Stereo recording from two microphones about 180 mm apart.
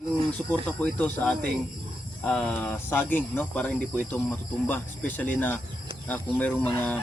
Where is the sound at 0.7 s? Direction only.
5° left (ahead or behind).